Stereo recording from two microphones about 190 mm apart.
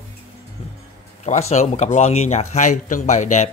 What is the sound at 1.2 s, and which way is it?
A man's voice, 35° left (ahead or behind).